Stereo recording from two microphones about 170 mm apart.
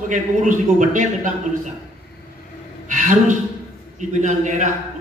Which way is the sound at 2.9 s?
50° right (ahead or behind).